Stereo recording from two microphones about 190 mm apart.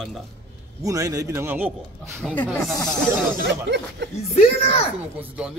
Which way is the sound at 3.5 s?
65° right (ahead or behind).